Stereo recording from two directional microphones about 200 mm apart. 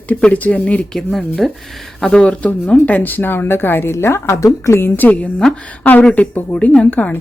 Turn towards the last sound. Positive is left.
turn(degrees=10)  # may be behind; listen again after turning